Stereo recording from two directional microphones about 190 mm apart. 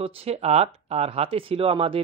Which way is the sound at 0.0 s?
30° right (ahead or behind).